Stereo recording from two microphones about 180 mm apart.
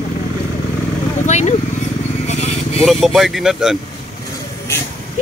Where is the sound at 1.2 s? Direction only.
40° left (ahead or behind).